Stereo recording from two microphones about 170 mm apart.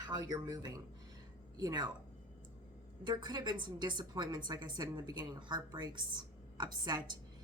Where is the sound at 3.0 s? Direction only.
25° right (ahead or behind).